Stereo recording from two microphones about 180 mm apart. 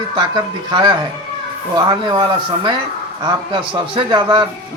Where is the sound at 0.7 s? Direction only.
25° right (ahead or behind).